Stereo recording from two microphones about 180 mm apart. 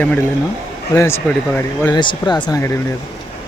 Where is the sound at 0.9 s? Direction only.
10° left (ahead or behind).